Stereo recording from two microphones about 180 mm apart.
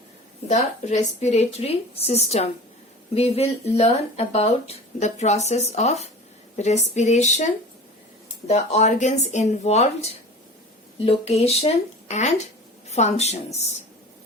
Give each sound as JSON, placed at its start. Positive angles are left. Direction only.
{"t": 0.4, "sound": "speech", "side_deg": 40}
{"t": 8.4, "sound": "speech", "side_deg": 40}